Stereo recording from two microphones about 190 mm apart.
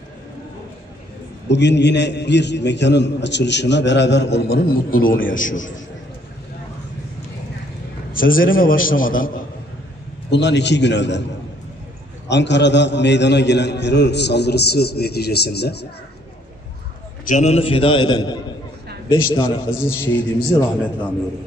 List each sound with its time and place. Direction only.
1.5 s a man's voice: 65° left (ahead or behind); by 5.7 s 45° left (ahead or behind)
8.1 s a man's voice: 50° left (ahead or behind)
10.3 s a man's voice: 65° left (ahead or behind)
12.3 s a man's voice: 65° left (ahead or behind)
17.3 s a man's voice: 35° left (ahead or behind)
19.7 s a man's voice: 10° left (ahead or behind)